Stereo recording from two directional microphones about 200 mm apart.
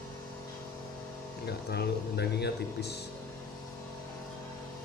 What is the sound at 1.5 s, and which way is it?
Speech, 55° left (ahead or behind).